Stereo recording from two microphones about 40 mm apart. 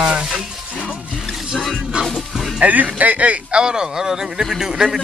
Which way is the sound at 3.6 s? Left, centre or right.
Centre.